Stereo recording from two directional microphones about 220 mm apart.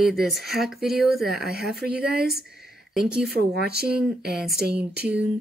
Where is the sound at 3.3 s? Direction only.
45° right (ahead or behind).